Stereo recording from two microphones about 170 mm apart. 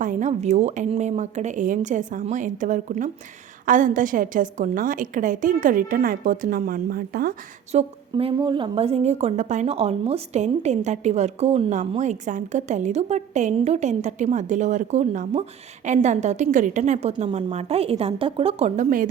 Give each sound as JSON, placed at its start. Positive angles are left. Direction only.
{"t": 0.0, "sound": "a woman's voice", "side_deg": -50}
{"t": 7.7, "sound": "speech", "side_deg": -40}
{"t": 8.1, "sound": "speech", "side_deg": -30}
{"t": 18.8, "sound": "a woman's voice", "side_deg": -55}